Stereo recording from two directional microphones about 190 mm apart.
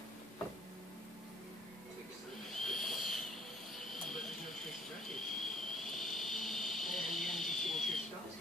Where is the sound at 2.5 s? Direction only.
Centre (ahead or behind).